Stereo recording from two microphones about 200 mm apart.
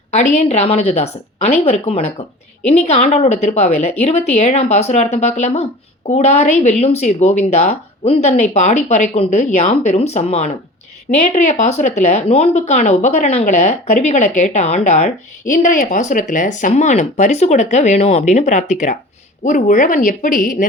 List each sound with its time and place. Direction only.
0.3 s speech: 35° left (ahead or behind)